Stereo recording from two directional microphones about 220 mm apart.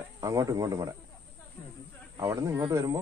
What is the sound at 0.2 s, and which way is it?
Speech, 15° right (ahead or behind).